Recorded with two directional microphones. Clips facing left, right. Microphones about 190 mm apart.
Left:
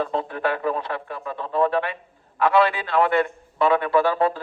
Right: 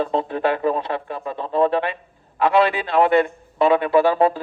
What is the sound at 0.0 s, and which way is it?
A man's voice, 25° right (ahead or behind).